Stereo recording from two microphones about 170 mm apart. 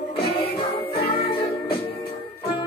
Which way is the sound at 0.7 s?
35° left (ahead or behind).